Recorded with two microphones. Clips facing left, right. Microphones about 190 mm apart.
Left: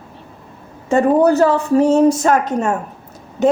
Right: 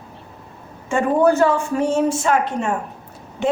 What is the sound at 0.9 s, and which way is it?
A woman's voice, 35° left (ahead or behind).